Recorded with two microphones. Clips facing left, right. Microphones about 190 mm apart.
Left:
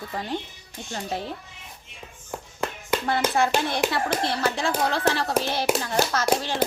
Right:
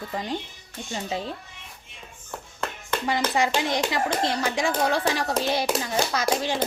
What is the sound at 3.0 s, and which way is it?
Speech, 15° right (ahead or behind).